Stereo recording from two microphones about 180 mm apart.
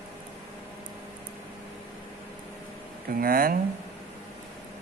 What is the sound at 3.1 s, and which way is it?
Speech, 55° right (ahead or behind).